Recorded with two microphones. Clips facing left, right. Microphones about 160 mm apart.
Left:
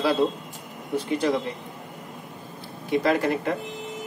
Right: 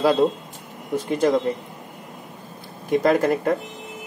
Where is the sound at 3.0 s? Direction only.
45° right (ahead or behind).